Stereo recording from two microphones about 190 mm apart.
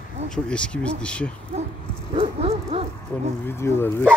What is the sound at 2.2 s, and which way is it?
Dog, 30° right (ahead or behind).